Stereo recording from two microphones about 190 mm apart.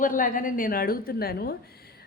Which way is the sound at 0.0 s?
45° left (ahead or behind).